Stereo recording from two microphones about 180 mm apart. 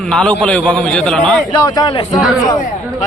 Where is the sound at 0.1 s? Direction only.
5° left (ahead or behind).